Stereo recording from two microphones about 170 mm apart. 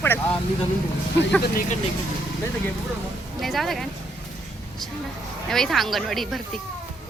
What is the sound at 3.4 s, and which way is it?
Speech, centre (ahead or behind).